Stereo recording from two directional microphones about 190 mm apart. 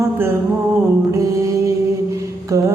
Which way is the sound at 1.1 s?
15° right (ahead or behind).